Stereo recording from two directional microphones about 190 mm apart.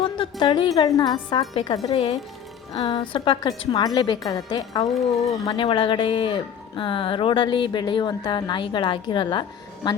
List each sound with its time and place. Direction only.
0.0 s music: 25° left (ahead or behind)
0.8 s speech: 20° left (ahead or behind)